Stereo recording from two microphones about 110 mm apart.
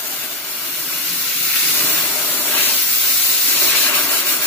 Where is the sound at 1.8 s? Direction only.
15° left (ahead or behind).